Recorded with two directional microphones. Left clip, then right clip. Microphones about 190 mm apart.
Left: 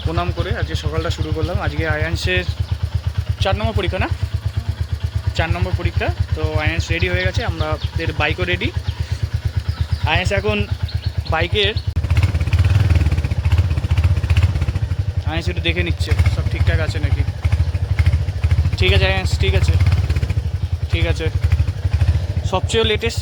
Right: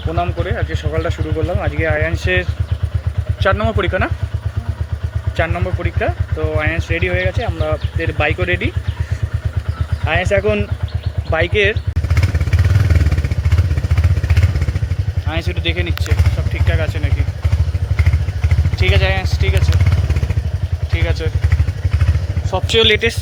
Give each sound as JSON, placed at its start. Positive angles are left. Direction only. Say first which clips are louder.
{"t": 0.1, "sound": "speech", "louder": "right 3 dB", "side_deg": 25}
{"t": 3.4, "sound": "speech", "louder": "right 5 dB", "side_deg": 0}
{"t": 5.4, "sound": "speech", "louder": "right 3 dB", "side_deg": 10}
{"t": 10.1, "sound": "speech", "louder": "right 3 dB", "side_deg": 20}
{"t": 15.3, "sound": "speech", "louder": "right 1 dB", "side_deg": 25}
{"t": 18.8, "sound": "speech", "louder": "even", "side_deg": 40}
{"t": 20.9, "sound": "speech", "louder": "even", "side_deg": 45}
{"t": 22.8, "sound": "speech", "louder": "right 7 dB", "side_deg": 10}